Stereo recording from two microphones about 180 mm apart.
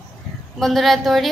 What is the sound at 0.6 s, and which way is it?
Speech, centre (ahead or behind).